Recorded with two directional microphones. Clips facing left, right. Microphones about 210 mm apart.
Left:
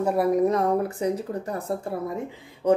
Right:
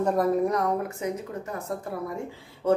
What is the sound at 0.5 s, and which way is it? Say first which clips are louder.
A woman's voice: left 4 dB; 30° left (ahead or behind).